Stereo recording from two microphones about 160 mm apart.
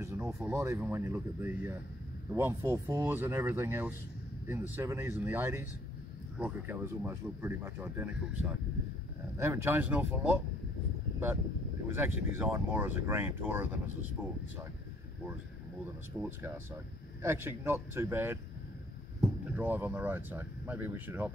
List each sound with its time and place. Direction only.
0.0 s speech: 15° right (ahead or behind)
11.9 s speech: 15° right (ahead or behind)
16.1 s speech: 10° right (ahead or behind)
19.5 s speech: 10° right (ahead or behind)